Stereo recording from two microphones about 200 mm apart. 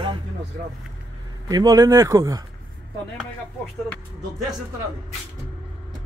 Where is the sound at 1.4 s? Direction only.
20° right (ahead or behind).